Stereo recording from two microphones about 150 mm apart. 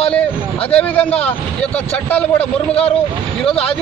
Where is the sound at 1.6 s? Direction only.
10° left (ahead or behind).